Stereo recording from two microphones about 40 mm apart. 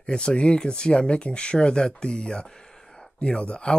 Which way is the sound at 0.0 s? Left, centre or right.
Left.